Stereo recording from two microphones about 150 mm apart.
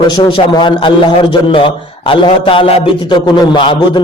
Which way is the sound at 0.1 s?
30° left (ahead or behind).